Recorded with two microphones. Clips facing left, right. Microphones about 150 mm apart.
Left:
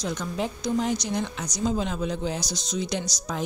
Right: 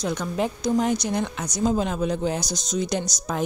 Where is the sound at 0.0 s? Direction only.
55° right (ahead or behind).